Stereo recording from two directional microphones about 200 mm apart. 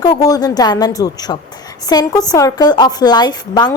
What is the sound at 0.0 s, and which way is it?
A woman's voice, 20° left (ahead or behind).